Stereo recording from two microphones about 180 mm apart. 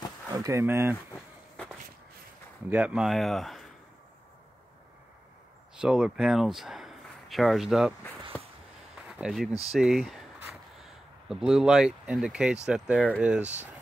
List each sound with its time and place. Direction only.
0.3 s speech: 15° right (ahead or behind)
2.7 s speech: 5° right (ahead or behind)
5.8 s speech: 5° right (ahead or behind)
9.0 s speech: 5° right (ahead or behind)